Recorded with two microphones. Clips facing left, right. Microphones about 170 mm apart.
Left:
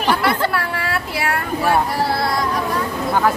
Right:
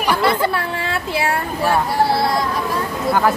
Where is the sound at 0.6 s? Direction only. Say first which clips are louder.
Even; 25° right (ahead or behind).